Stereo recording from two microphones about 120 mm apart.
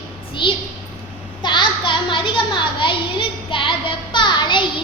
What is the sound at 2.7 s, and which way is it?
Music, 45° left (ahead or behind).